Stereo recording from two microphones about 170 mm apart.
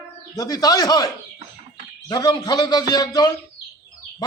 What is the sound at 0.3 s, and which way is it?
A man's voice, 20° left (ahead or behind).